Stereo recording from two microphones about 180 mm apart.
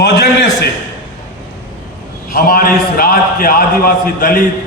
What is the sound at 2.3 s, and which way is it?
A man's voice, 55° left (ahead or behind).